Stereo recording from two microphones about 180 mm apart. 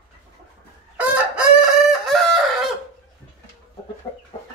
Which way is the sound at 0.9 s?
5° right (ahead or behind).